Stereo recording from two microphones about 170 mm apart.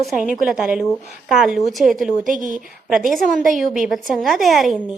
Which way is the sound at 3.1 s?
Centre (ahead or behind).